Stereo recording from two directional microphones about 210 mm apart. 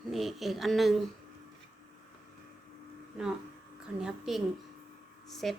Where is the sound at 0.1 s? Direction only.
Centre (ahead or behind).